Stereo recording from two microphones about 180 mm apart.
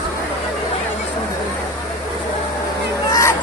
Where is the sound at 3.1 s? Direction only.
15° left (ahead or behind).